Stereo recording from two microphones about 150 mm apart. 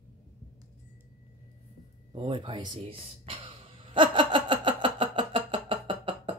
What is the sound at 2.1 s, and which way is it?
Speech, 35° right (ahead or behind).